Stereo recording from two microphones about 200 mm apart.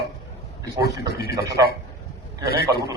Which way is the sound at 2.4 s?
50° left (ahead or behind).